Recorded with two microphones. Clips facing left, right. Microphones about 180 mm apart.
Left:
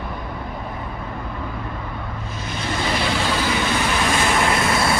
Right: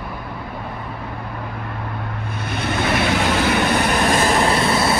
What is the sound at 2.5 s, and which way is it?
Vehicle, 60° right (ahead or behind).